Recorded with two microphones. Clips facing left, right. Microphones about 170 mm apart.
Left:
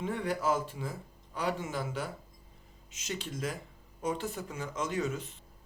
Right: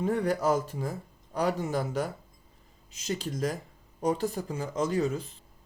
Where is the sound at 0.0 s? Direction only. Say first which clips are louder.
Right 5 dB; 40° right (ahead or behind).